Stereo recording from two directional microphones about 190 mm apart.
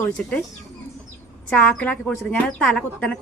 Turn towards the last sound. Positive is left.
turn(degrees=5)  # may be behind; listen again after turning